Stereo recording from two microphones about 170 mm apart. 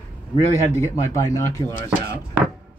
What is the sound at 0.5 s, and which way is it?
Speech, 15° left (ahead or behind).